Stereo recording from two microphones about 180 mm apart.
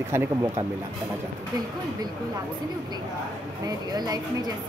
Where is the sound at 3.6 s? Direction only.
20° right (ahead or behind).